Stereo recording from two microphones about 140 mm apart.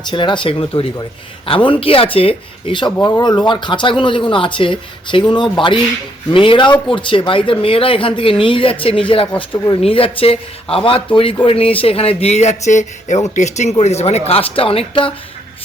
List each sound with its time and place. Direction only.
0.1 s speech: 35° left (ahead or behind)